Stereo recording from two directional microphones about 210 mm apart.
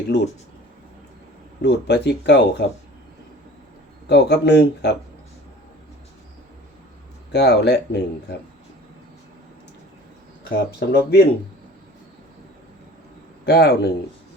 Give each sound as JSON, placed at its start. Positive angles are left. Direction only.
{"t": 1.6, "sound": "speech", "side_deg": 55}
{"t": 4.0, "sound": "speech", "side_deg": 55}
{"t": 7.3, "sound": "speech", "side_deg": 55}
{"t": 10.5, "sound": "speech", "side_deg": 50}
{"t": 13.4, "sound": "speech", "side_deg": 50}